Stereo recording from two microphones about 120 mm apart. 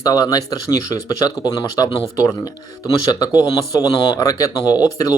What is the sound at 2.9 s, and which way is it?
Speech, 30° left (ahead or behind).